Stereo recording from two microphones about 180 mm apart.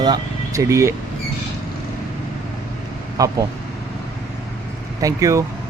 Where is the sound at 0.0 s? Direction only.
20° right (ahead or behind).